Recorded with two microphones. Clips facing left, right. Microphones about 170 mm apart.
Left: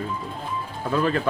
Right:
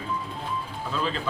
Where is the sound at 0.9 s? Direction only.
55° left (ahead or behind).